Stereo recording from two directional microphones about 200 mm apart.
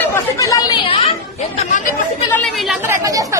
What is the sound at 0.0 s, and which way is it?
Chatter, 10° left (ahead or behind).